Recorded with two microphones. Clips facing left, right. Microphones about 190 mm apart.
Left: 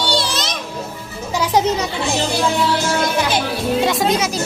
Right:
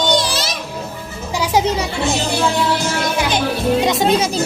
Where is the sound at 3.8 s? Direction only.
20° right (ahead or behind).